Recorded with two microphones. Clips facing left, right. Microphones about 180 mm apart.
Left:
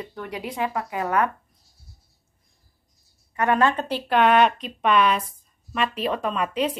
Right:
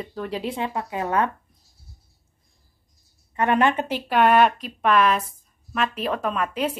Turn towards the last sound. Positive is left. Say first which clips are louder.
# even
turn(degrees=0)  # may be behind; listen again after turning